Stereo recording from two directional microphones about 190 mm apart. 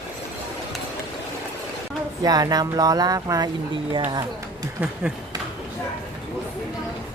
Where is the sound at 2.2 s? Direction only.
20° right (ahead or behind).